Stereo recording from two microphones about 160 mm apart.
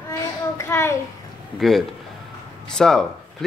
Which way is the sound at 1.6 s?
Centre (ahead or behind).